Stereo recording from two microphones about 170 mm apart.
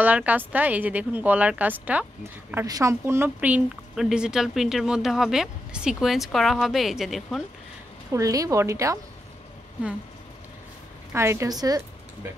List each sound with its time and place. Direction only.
0.0 s speech: 10° right (ahead or behind)
2.5 s speech: 20° right (ahead or behind); by 7.4 s centre (ahead or behind)
8.1 s a woman's voice: 20° right (ahead or behind)
11.1 s speech: 15° right (ahead or behind)